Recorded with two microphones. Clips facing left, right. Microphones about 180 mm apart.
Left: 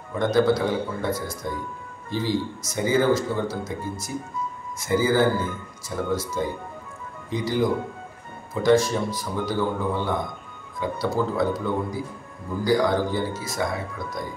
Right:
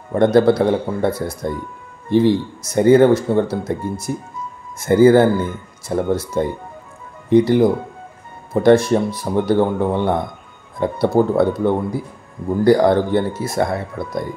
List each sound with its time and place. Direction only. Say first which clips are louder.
0.1 s speech: right 7 dB; 65° right (ahead or behind)